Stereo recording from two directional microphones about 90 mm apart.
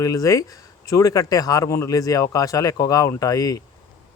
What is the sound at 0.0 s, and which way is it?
Speech, 40° left (ahead or behind).